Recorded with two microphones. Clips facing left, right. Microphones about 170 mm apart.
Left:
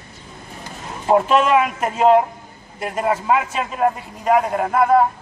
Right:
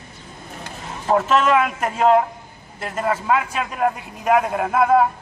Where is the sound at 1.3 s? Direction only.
10° left (ahead or behind).